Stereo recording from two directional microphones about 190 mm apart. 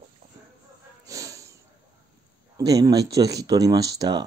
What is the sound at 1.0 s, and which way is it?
Snort, 15° right (ahead or behind).